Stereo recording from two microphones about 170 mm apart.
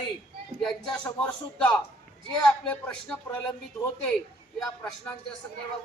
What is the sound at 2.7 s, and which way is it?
Speech, 5° left (ahead or behind).